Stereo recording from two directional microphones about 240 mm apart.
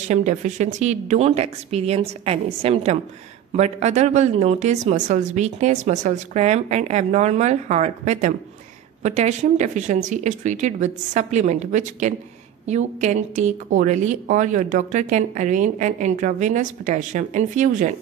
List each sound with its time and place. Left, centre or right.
0.1 s a woman's voice: right